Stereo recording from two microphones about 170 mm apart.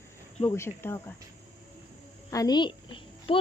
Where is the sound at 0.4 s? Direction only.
15° left (ahead or behind).